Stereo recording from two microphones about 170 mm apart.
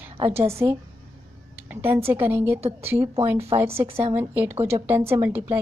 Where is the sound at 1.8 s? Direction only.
15° right (ahead or behind).